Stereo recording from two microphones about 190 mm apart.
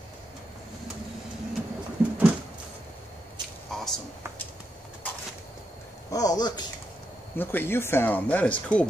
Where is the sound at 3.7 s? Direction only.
Centre (ahead or behind).